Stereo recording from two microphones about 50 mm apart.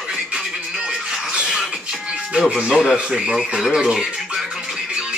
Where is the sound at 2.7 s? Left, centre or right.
Centre.